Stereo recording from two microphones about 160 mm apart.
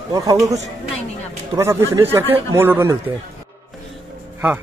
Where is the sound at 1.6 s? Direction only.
20° right (ahead or behind).